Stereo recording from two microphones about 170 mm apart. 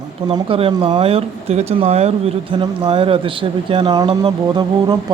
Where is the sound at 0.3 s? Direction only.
30° right (ahead or behind).